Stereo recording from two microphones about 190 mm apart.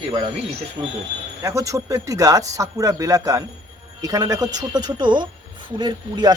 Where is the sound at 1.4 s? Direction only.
15° right (ahead or behind).